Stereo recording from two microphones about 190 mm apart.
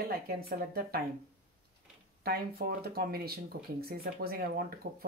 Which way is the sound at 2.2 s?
55° right (ahead or behind).